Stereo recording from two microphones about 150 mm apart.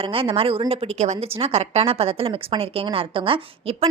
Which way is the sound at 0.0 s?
40° right (ahead or behind).